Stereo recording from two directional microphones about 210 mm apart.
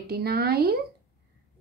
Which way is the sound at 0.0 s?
50° right (ahead or behind).